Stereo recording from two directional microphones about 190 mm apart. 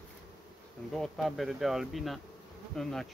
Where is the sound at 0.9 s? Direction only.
Centre (ahead or behind).